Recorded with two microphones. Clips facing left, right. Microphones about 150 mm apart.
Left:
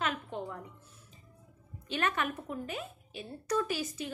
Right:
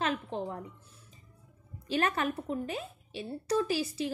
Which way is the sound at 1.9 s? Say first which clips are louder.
Right 3 dB; 35° right (ahead or behind).